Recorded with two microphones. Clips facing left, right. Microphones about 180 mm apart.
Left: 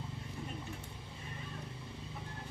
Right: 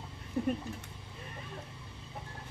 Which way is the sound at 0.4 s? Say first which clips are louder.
Right 16 dB; 60° right (ahead or behind).